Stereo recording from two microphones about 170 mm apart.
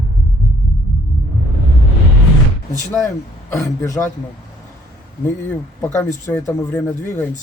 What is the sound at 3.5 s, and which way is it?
Speech, 20° left (ahead or behind).